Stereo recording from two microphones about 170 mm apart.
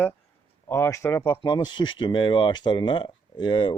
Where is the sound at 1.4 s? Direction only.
25° left (ahead or behind).